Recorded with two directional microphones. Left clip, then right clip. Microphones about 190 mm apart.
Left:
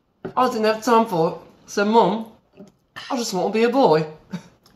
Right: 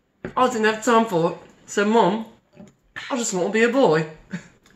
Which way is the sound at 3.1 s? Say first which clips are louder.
Left 1 dB; 5° right (ahead or behind).